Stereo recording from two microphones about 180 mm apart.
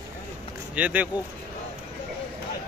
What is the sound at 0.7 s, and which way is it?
Speech, 10° right (ahead or behind).